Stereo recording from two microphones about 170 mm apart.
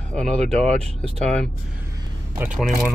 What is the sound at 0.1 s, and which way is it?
Speech, 5° left (ahead or behind).